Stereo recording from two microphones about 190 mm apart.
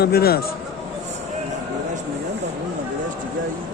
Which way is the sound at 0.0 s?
55° left (ahead or behind).